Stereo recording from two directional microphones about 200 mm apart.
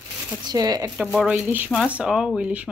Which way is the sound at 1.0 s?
5° right (ahead or behind).